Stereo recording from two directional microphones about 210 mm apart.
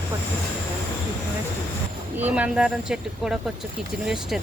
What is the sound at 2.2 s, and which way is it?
Speech, 5° right (ahead or behind).